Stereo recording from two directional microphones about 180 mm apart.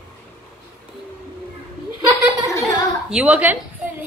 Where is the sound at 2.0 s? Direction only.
15° right (ahead or behind).